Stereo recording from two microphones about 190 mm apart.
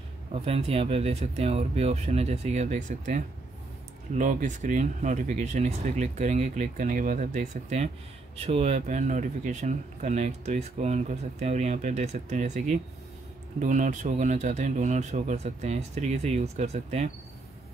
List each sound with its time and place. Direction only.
0.3 s speech: 30° right (ahead or behind)